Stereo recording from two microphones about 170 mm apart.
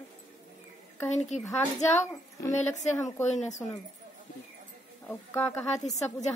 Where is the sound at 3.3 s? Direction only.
45° left (ahead or behind).